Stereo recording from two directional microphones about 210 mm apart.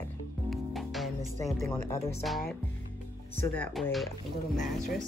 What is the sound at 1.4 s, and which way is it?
Speech, 15° left (ahead or behind).